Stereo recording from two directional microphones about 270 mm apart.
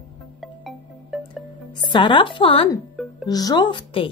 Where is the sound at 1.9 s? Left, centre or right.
Centre.